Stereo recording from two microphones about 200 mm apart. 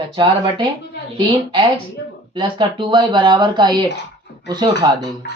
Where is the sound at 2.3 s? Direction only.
25° right (ahead or behind).